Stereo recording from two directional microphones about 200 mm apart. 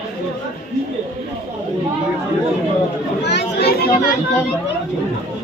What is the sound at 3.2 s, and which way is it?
Speech, 55° left (ahead or behind).